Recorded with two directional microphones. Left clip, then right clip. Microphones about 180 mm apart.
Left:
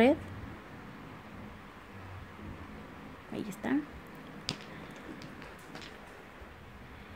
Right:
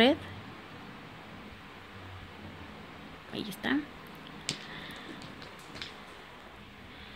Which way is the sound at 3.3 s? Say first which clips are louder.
Right 2 dB; 10° left (ahead or behind).